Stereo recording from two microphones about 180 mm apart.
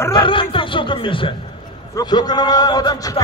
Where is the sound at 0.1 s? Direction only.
30° left (ahead or behind).